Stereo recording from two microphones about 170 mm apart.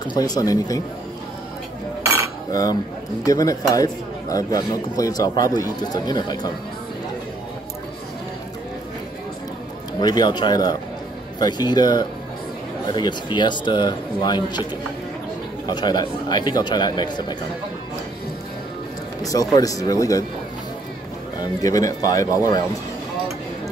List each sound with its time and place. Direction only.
0.1 s speech: 20° left (ahead or behind)
2.5 s speech: 20° left (ahead or behind)
9.9 s speech: 25° left (ahead or behind)
19.5 s speech: 20° left (ahead or behind)
21.4 s speech: 20° left (ahead or behind)